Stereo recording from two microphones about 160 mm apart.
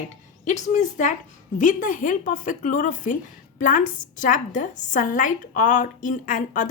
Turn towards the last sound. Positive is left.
turn(degrees=55)  # may be behind; listen again after turning